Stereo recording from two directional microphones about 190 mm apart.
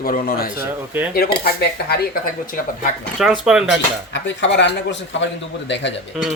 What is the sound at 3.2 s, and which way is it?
Speech, 5° right (ahead or behind).